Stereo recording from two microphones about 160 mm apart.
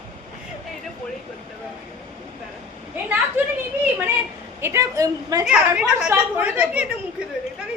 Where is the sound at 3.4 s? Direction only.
15° right (ahead or behind).